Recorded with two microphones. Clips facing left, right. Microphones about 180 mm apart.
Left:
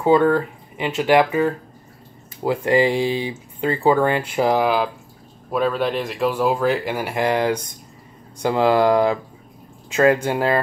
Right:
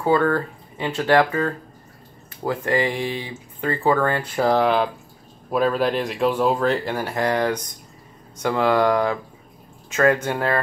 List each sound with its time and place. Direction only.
0.0 s speech: 20° left (ahead or behind)
10.3 s speech: 20° left (ahead or behind)